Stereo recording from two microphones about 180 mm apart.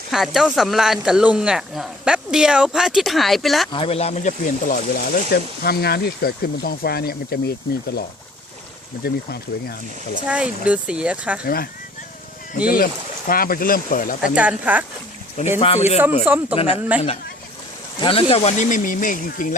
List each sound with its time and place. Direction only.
0.1 s speech: centre (ahead or behind)
3.7 s speech: 30° left (ahead or behind); by 7.5 s 60° left (ahead or behind)
9.0 s speech: 60° left (ahead or behind)
10.2 s speech: 5° right (ahead or behind)
11.4 s speech: 55° left (ahead or behind)
14.3 s speech: 10° right (ahead or behind)
15.5 s speech: 35° left (ahead or behind)
16.2 s speech: 10° right (ahead or behind)
18.0 s speech: 30° left (ahead or behind); by 19.5 s 50° left (ahead or behind)